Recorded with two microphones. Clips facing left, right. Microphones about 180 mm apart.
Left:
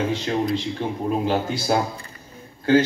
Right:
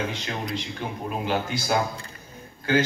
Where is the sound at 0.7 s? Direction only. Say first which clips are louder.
Left 7 dB; 30° left (ahead or behind).